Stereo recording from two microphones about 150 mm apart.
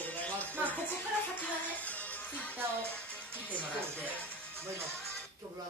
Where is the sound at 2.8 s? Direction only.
10° left (ahead or behind).